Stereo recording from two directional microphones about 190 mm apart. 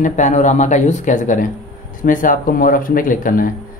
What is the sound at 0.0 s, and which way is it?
Speech, 40° left (ahead or behind).